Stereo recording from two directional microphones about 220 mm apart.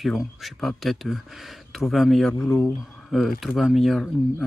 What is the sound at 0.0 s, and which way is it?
Speech, centre (ahead or behind).